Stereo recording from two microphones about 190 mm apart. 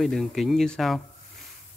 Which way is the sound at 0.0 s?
Centre (ahead or behind).